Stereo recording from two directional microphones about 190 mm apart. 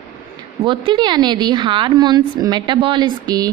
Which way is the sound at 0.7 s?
25° right (ahead or behind).